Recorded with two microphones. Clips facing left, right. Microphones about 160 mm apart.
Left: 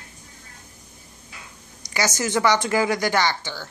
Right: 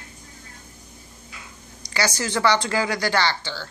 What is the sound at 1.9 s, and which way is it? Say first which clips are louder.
Speech: left 1 dB; 20° left (ahead or behind).